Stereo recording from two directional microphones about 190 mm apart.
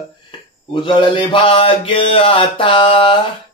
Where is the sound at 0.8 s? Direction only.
25° left (ahead or behind).